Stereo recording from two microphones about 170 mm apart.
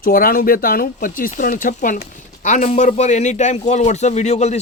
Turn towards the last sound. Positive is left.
turn(degrees=40)  # may be behind; listen again after turning